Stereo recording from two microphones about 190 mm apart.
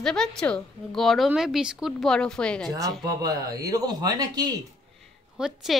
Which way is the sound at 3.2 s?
20° right (ahead or behind).